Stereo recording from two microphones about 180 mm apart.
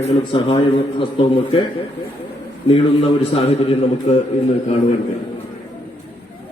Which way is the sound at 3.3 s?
35° left (ahead or behind).